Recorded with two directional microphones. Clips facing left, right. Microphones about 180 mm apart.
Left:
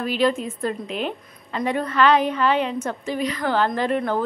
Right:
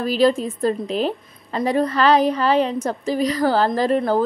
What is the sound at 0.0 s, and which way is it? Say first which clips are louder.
A woman's voice: right 4 dB; 35° right (ahead or behind).